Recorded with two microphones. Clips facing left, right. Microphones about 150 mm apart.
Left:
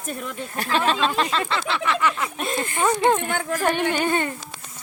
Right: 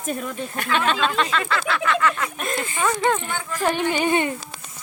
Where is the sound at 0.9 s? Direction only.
35° left (ahead or behind).